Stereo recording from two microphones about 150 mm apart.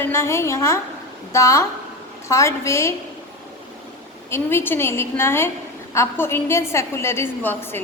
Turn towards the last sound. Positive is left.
turn(degrees=15)  # may be behind; listen again after turning